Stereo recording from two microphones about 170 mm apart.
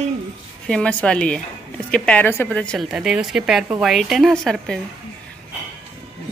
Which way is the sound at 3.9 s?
Centre (ahead or behind).